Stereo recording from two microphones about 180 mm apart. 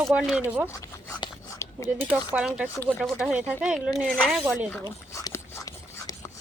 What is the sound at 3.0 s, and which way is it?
Speech, centre (ahead or behind).